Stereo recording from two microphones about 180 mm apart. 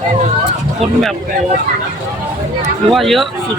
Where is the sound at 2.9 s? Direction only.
Centre (ahead or behind).